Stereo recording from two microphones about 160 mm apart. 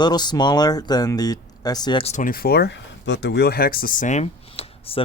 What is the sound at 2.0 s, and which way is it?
Speech, 55° left (ahead or behind).